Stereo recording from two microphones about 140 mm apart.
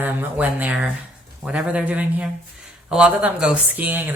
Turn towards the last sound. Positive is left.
turn(degrees=-10)  # may be behind; listen again after turning